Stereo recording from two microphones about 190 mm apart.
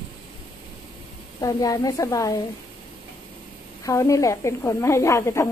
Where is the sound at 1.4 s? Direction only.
20° left (ahead or behind).